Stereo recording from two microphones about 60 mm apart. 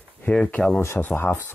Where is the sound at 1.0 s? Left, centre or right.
Left.